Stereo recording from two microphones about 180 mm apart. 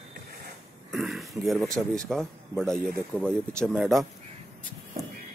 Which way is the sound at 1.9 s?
Centre (ahead or behind).